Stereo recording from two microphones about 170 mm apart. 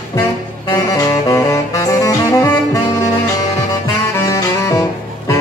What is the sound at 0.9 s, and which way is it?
Saxophone, 20° left (ahead or behind).